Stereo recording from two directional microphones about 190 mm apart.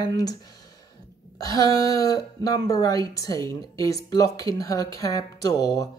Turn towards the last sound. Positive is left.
turn(degrees=20)  # may be behind; listen again after turning